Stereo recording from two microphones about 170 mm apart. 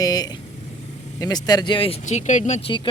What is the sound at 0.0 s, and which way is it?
Speech, 25° left (ahead or behind).